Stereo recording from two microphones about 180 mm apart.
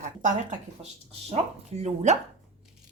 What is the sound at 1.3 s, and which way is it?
Speech, 35° right (ahead or behind).